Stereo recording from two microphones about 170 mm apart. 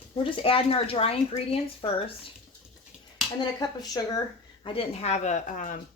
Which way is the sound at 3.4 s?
25° left (ahead or behind).